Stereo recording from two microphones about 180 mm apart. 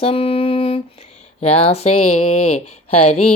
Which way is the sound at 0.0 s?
30° left (ahead or behind).